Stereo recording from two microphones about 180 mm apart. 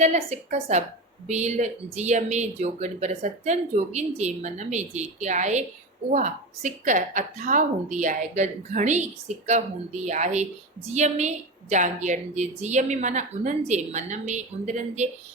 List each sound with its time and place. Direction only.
0.0 s speech: 35° right (ahead or behind)